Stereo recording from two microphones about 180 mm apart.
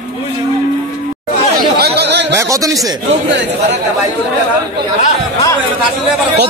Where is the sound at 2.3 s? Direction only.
15° right (ahead or behind).